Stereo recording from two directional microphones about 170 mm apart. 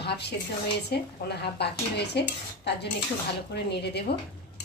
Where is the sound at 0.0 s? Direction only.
75° left (ahead or behind).